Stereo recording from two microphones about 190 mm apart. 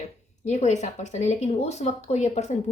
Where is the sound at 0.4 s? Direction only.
35° left (ahead or behind).